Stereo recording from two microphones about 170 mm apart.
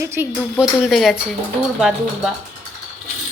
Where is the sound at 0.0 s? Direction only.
15° right (ahead or behind).